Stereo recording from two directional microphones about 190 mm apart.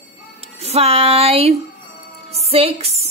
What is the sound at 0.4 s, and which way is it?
Speech, 35° right (ahead or behind).